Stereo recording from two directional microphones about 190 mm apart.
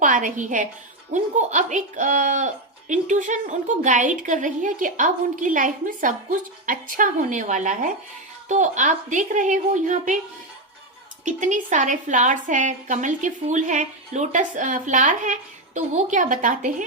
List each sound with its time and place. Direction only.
0.0 s a woman's voice: 40° right (ahead or behind)
11.3 s a woman's voice: 40° right (ahead or behind)